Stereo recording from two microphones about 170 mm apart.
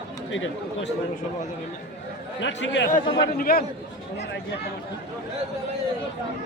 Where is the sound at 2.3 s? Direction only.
90° left.